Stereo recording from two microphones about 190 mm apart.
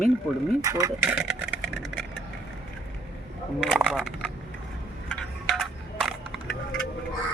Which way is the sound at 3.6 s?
5° right (ahead or behind).